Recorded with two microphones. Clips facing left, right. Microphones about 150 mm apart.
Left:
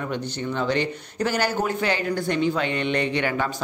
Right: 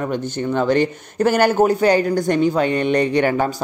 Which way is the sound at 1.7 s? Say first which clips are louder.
Right 9 dB; 40° right (ahead or behind).